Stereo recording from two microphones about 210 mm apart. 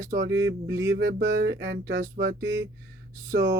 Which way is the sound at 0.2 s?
60° right (ahead or behind).